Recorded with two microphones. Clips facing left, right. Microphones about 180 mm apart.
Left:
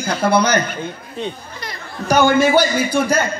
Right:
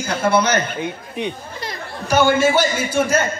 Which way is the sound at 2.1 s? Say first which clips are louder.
Left 2 dB; 40° left (ahead or behind).